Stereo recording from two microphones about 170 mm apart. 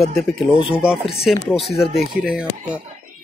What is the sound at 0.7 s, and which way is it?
Speech, 5° right (ahead or behind).